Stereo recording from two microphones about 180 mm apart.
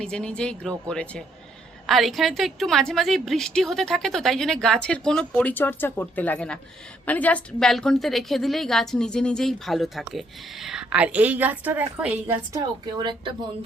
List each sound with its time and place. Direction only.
0.0 s a woman's voice: 5° left (ahead or behind)
12.5 s speech: 25° right (ahead or behind)